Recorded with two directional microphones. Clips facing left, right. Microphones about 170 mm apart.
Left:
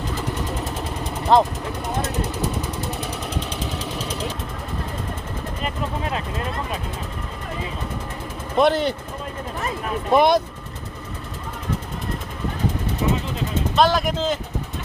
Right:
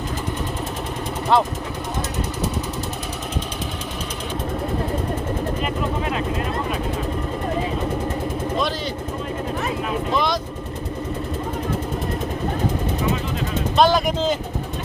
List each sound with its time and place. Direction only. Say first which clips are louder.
1.3 s speech: left 2 dB; 40° left (ahead or behind)
8.5 s speech: left 10 dB; 60° left (ahead or behind)
10.1 s speech: left 8 dB; 55° left (ahead or behind)
13.7 s speech: right 2 dB; centre (ahead or behind)